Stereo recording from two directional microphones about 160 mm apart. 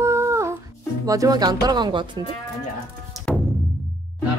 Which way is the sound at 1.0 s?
20° right (ahead or behind).